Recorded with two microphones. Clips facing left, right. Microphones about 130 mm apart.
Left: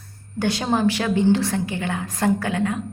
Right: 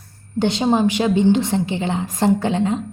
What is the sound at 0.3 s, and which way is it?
A woman's voice, 20° right (ahead or behind).